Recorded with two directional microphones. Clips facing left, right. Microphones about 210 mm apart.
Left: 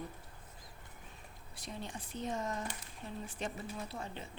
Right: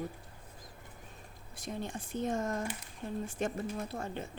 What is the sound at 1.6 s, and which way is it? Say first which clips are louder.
Speech: right 6 dB; 50° right (ahead or behind).